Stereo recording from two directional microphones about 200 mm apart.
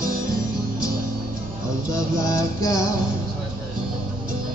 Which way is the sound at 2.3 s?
15° left (ahead or behind).